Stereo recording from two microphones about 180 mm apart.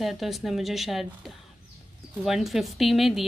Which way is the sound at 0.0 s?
Centre (ahead or behind).